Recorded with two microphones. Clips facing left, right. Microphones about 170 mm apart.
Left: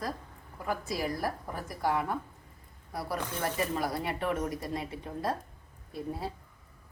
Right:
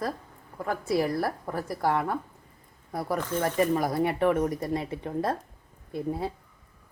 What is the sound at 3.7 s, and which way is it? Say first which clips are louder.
Speech: right 7 dB; 50° right (ahead or behind).